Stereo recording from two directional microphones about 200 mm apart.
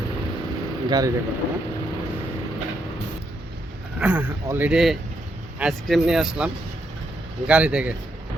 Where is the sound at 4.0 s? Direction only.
10° right (ahead or behind).